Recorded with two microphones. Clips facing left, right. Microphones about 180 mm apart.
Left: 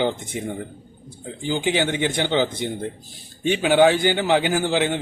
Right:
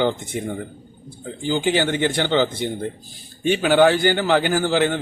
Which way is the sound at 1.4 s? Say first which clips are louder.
Right 2 dB; 15° left (ahead or behind).